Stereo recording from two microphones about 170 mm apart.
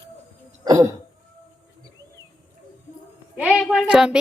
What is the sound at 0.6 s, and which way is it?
Cough, 20° right (ahead or behind).